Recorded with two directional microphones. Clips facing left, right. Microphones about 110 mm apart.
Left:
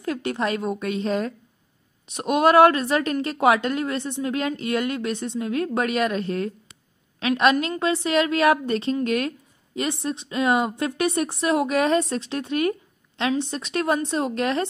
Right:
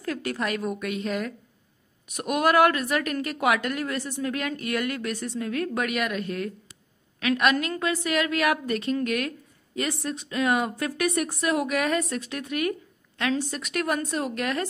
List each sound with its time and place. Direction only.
0.0 s a woman's voice: 25° left (ahead or behind)